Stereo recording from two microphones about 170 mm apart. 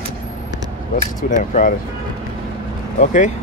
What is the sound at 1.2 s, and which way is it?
Speech, 50° left (ahead or behind).